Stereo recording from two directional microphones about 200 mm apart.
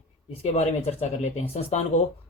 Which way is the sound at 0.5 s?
30° left (ahead or behind).